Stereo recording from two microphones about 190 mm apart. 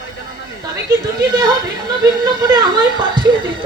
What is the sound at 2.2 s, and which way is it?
Speech, 20° right (ahead or behind).